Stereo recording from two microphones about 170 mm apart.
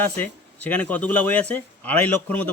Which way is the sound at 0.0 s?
10° left (ahead or behind).